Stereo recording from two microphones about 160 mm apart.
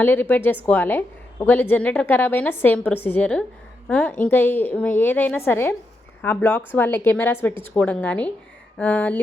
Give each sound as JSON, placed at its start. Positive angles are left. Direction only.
{"t": 0.0, "sound": "a woman's voice", "side_deg": 10}